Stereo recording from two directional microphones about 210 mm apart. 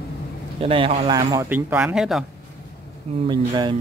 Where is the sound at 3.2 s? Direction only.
20° right (ahead or behind).